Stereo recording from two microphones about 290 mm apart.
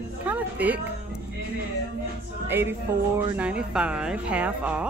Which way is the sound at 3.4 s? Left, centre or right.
Centre.